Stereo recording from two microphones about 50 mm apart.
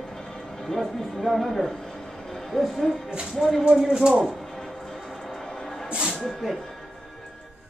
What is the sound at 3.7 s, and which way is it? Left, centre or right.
Speech, centre.